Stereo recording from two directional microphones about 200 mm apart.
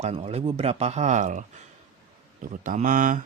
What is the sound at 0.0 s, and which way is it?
Speech, 30° right (ahead or behind).